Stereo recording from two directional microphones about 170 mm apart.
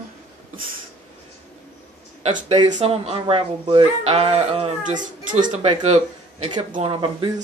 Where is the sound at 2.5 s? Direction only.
25° right (ahead or behind).